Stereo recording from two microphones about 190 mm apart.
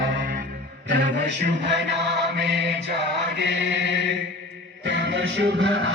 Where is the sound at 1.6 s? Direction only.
65° right (ahead or behind).